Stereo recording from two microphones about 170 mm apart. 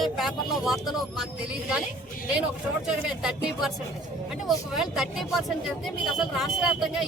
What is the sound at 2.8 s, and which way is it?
Speech, 5° right (ahead or behind).